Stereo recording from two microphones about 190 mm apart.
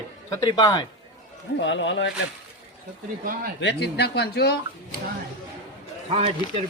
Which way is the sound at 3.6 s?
65° left (ahead or behind).